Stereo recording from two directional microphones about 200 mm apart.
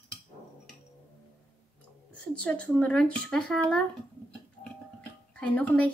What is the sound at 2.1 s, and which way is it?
Speech, 5° left (ahead or behind).